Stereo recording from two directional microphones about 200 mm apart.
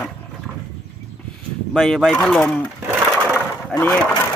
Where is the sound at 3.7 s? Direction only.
10° left (ahead or behind).